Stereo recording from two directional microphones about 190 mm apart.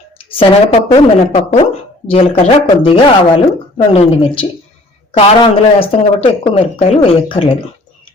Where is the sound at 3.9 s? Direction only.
30° left (ahead or behind).